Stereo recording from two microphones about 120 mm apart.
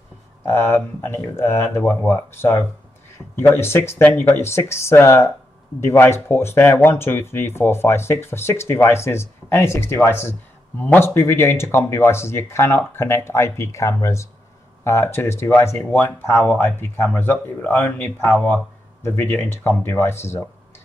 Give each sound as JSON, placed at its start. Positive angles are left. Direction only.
{"t": 0.5, "sound": "speech", "side_deg": 20}